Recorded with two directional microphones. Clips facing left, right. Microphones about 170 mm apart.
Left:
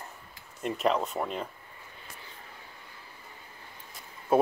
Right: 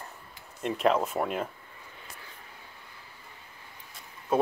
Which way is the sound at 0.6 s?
Centre (ahead or behind).